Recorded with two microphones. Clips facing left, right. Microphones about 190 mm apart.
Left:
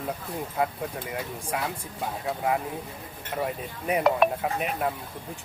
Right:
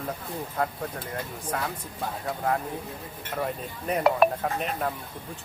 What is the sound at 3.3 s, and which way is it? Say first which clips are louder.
Speech: left 1 dB; 5° left (ahead or behind).